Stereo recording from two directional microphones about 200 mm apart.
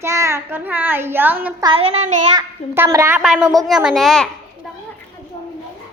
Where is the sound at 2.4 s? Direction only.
15° right (ahead or behind).